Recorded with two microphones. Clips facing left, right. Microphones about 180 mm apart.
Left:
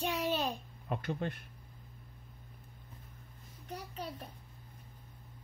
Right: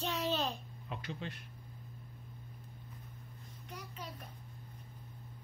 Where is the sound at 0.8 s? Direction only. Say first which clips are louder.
Left 7 dB; 50° left (ahead or behind).